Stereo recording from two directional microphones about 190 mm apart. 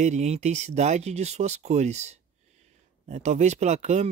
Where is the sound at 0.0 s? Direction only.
35° right (ahead or behind).